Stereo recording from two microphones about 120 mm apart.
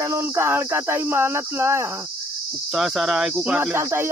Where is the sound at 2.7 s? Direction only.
5° right (ahead or behind).